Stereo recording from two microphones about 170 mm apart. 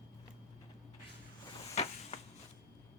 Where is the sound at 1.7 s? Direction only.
40° left (ahead or behind).